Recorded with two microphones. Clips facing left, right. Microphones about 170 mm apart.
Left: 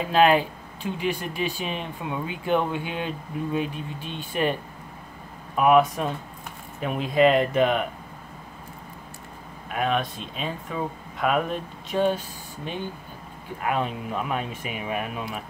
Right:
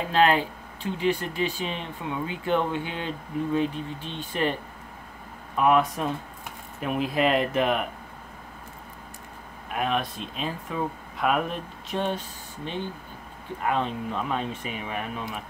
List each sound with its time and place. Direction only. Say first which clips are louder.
0.1 s speech: left 3 dB; 10° left (ahead or behind)
5.6 s speech: left 3 dB; 5° left (ahead or behind)
9.7 s speech: left 2 dB; centre (ahead or behind)
13.7 s speech: even; 10° left (ahead or behind)